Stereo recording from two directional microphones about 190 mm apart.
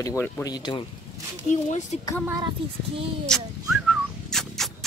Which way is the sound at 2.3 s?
20° right (ahead or behind).